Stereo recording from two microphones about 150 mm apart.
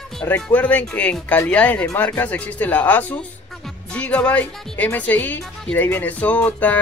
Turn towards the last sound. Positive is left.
turn(degrees=10)  # may be behind; listen again after turning